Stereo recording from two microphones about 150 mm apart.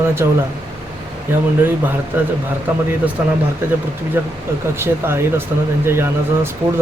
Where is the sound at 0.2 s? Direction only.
20° right (ahead or behind).